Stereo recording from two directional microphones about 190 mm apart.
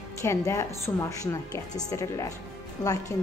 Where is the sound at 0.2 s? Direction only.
15° left (ahead or behind).